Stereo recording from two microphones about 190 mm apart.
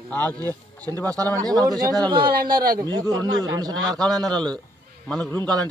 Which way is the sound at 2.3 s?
50° right (ahead or behind).